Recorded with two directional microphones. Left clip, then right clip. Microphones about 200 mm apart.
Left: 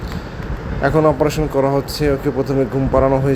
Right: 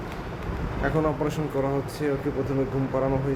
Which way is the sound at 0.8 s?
30° left (ahead or behind).